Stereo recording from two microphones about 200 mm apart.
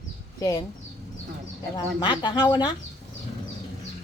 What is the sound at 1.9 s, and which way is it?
Speech, 20° left (ahead or behind).